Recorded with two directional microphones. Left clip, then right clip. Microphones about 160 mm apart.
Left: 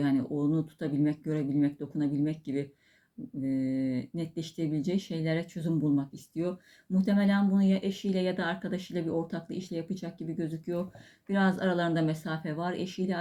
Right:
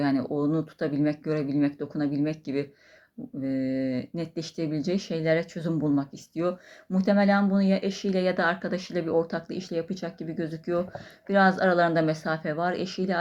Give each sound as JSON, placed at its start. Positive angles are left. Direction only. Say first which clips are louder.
{"t": 0.0, "sound": "speech", "louder": "right 3 dB", "side_deg": 20}
{"t": 3.4, "sound": "a sound", "louder": "right 3 dB", "side_deg": 15}
{"t": 3.8, "sound": "speech", "louder": "right 3 dB", "side_deg": 20}